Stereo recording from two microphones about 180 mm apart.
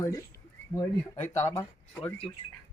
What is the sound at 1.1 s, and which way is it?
Speech, 40° left (ahead or behind).